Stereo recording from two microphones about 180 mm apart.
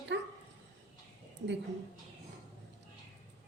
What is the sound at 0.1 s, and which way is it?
Dog, 75° right (ahead or behind).